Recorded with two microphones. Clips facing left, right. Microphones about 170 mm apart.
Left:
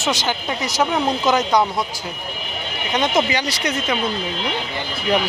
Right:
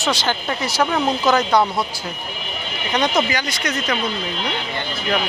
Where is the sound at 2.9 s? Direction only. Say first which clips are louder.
Even; 25° left (ahead or behind).